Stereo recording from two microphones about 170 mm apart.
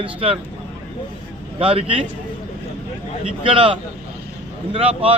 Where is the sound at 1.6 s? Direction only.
30° right (ahead or behind).